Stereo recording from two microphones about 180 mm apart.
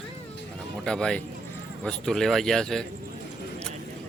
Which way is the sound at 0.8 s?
5° left (ahead or behind).